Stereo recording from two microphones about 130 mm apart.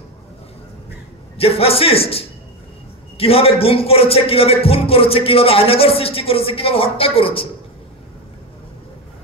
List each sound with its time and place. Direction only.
1.4 s speech: 50° left (ahead or behind)